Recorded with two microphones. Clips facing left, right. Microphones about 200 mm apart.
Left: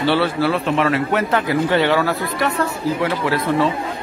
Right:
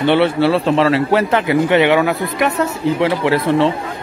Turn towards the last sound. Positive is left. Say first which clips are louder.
# right 4 dB
turn(degrees=-25)  # may be behind; listen again after turning